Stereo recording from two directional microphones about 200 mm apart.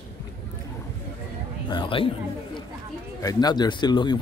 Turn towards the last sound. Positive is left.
turn(degrees=20)  # may be behind; listen again after turning